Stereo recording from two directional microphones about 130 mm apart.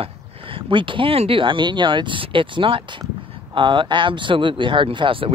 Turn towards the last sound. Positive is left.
turn(degrees=-45)  # may be behind; listen again after turning